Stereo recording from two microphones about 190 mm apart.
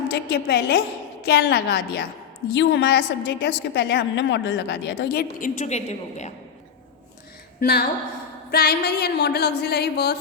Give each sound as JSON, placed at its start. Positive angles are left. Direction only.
{"t": 0.1, "sound": "a woman's voice", "side_deg": 60}
{"t": 7.6, "sound": "a woman's voice", "side_deg": 55}